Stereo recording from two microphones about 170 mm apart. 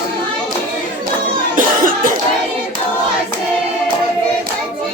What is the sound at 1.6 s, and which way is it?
Cough, 55° right (ahead or behind).